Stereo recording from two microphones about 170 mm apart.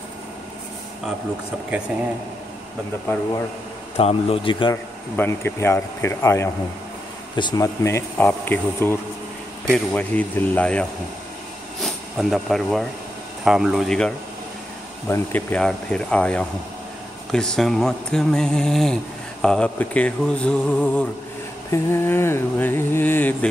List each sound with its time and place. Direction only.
3.9 s speech: 35° left (ahead or behind)
5.1 s music: 15° left (ahead or behind)
9.9 s music: 10° left (ahead or behind)
11.8 s speech: centre (ahead or behind)
15.0 s music: 10° left (ahead or behind)
17.3 s speech: 5° left (ahead or behind)
19.4 s music: 5° left (ahead or behind)